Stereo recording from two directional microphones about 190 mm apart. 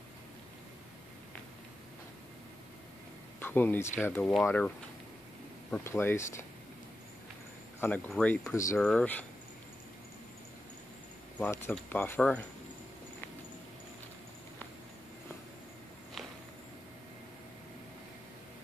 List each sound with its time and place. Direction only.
3.3 s speech: 10° left (ahead or behind)
7.8 s speech: 5° left (ahead or behind)
11.3 s speech: 10° left (ahead or behind)